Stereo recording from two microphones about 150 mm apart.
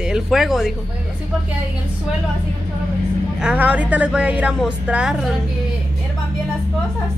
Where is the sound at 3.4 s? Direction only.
10° right (ahead or behind).